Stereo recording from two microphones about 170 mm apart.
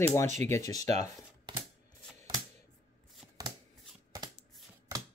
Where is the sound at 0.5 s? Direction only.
20° left (ahead or behind).